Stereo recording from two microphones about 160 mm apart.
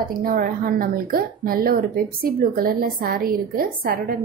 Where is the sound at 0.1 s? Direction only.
65° right (ahead or behind).